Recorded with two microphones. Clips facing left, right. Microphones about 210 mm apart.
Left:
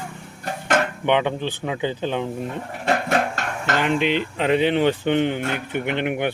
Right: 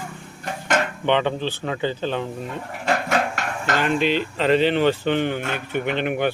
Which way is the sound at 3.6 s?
20° left (ahead or behind).